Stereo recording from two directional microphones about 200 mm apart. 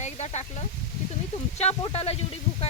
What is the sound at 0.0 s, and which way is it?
Speech, 35° left (ahead or behind).